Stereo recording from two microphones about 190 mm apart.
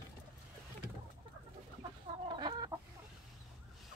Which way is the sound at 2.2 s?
25° right (ahead or behind).